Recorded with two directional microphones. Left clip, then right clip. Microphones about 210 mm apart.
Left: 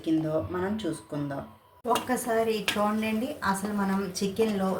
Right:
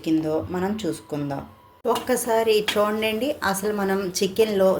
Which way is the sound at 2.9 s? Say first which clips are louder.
Right 7 dB; 45° right (ahead or behind).